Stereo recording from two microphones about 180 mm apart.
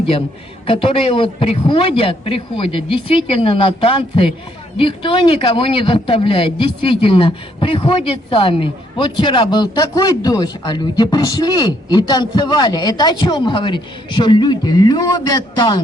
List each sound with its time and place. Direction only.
0.7 s a man's voice: 30° left (ahead or behind)